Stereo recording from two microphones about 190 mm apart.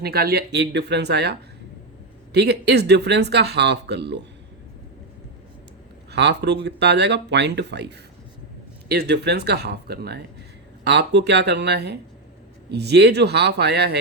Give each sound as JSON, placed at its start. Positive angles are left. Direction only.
{"t": 0.0, "sound": "speech", "side_deg": -55}
{"t": 6.1, "sound": "speech", "side_deg": -60}